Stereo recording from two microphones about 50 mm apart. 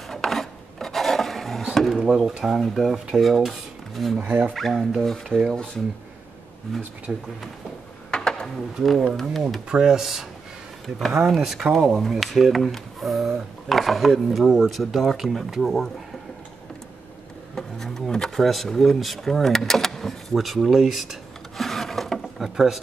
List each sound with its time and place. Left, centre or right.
0.1 s filing: centre
2.1 s speech: centre
3.1 s dishes: centre
4.2 s speech: right
4.6 s speech: centre
6.7 s speech: centre
7.1 s speech: centre
8.1 s a sound: centre
9.1 s speech: centre
9.7 s speech: centre
17.6 s bee: centre
18.3 s speech: centre